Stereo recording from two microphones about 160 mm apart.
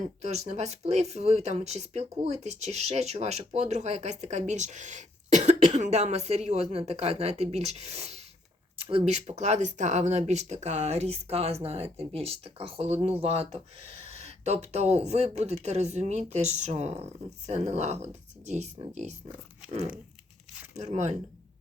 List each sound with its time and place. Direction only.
0.2 s speech: 40° right (ahead or behind)
20.7 s speech: 45° right (ahead or behind)